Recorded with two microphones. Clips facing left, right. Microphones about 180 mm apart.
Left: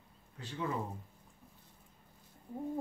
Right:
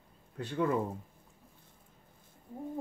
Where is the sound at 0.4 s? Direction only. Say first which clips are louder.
Right 9 dB; 60° right (ahead or behind).